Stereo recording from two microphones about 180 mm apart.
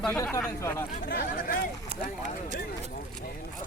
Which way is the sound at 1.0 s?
55° left (ahead or behind).